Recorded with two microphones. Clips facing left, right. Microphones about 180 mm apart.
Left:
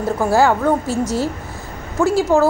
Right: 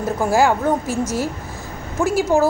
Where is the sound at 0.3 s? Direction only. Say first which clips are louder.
Left 2 dB; 15° right (ahead or behind).